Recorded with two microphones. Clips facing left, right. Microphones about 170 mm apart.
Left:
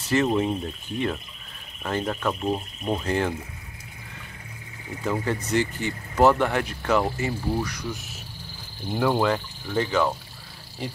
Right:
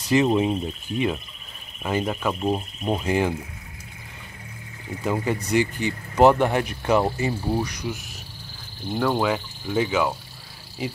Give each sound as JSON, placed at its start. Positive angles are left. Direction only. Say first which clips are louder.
{"t": 0.1, "sound": "speech", "louder": "right 3 dB", "side_deg": -15}
{"t": 5.0, "sound": "speech", "louder": "right 2 dB", "side_deg": -15}
{"t": 8.9, "sound": "speech", "louder": "even", "side_deg": 5}